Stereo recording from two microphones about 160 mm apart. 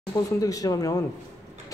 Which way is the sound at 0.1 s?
20° left (ahead or behind).